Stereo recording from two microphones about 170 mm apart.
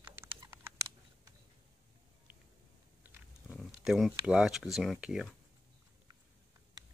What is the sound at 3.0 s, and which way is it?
Biting, 10° right (ahead or behind).